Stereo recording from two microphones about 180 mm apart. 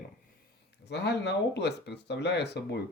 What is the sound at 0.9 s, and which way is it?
Speech, 70° left (ahead or behind).